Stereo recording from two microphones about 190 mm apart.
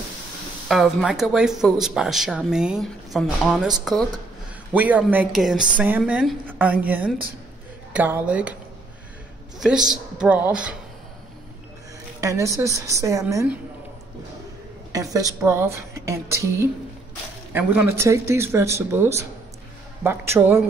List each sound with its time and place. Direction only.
0.7 s a woman's voice: centre (ahead or behind)
9.6 s speech: 5° right (ahead or behind)
12.2 s a woman's voice: 15° right (ahead or behind)
14.9 s a woman's voice: 20° right (ahead or behind)